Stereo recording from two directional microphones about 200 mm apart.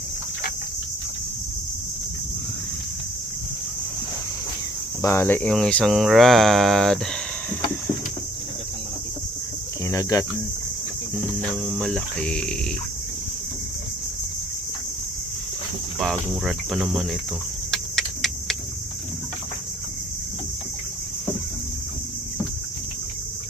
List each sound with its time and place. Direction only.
5.0 s cricket: 10° left (ahead or behind)
9.8 s speech: 15° left (ahead or behind)
11.4 s cricket: 5° left (ahead or behind)
16.0 s cricket: centre (ahead or behind)